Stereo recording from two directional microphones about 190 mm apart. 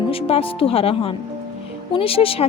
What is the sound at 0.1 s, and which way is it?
A woman's voice, 30° left (ahead or behind).